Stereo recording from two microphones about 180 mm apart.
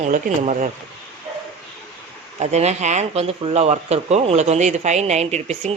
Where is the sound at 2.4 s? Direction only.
40° right (ahead or behind).